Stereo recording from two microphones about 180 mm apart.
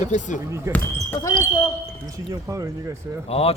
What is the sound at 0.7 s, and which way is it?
Speech, 15° right (ahead or behind).